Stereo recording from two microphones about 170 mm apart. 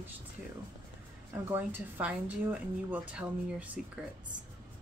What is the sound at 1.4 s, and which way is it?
Speech, 10° right (ahead or behind).